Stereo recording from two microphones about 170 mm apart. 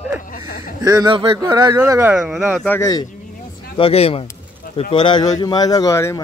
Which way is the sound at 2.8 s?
20° left (ahead or behind).